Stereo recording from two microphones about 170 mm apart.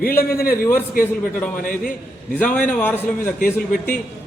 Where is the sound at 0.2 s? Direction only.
60° left (ahead or behind).